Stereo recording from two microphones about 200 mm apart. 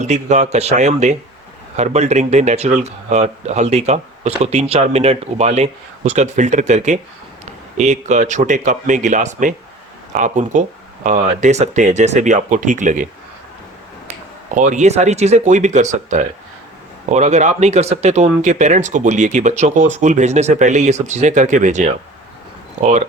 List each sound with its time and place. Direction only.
0.0 s speech: 35° right (ahead or behind)
14.5 s speech: 40° right (ahead or behind)